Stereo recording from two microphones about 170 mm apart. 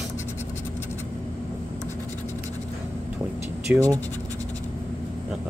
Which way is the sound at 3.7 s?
20° right (ahead or behind).